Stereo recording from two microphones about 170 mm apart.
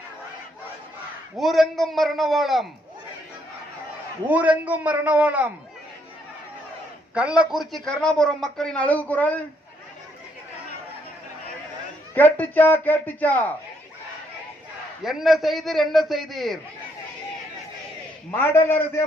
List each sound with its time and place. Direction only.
1.4 s speech: centre (ahead or behind)
4.3 s a man's voice: 10° right (ahead or behind)
7.1 s speech: 5° right (ahead or behind); by 9.4 s 10° left (ahead or behind)
12.1 s a man's voice: 10° left (ahead or behind)
15.0 s speech: centre (ahead or behind)
18.3 s a man's voice: 15° left (ahead or behind)